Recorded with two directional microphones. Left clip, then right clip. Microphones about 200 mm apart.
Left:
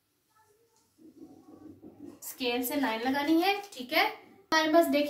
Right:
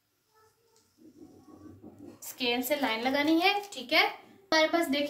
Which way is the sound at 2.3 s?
40° right (ahead or behind).